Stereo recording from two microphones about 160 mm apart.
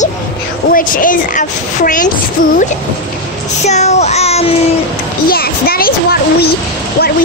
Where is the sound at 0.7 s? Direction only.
55° left (ahead or behind).